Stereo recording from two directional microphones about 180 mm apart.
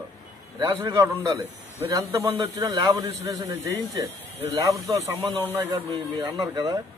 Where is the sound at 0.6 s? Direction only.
20° right (ahead or behind).